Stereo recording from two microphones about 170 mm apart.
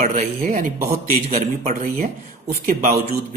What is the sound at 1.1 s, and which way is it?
Speech, 40° right (ahead or behind).